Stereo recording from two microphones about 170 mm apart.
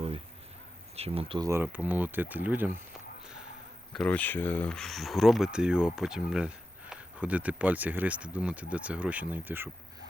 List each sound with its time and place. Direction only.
0.9 s speech: 35° right (ahead or behind)
1.5 s speech: 10° right (ahead or behind)
3.9 s speech: 10° left (ahead or behind); by 9.6 s 10° right (ahead or behind)